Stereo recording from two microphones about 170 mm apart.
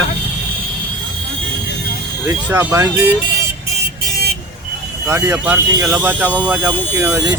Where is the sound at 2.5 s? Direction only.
15° right (ahead or behind).